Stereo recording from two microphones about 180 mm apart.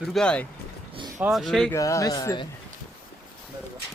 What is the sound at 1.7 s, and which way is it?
Speech, 15° left (ahead or behind).